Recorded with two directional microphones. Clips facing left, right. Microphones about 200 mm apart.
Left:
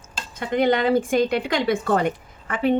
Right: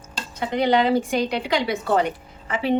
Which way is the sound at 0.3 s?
50° left (ahead or behind).